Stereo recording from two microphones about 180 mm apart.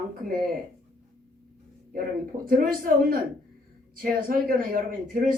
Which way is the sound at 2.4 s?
50° right (ahead or behind).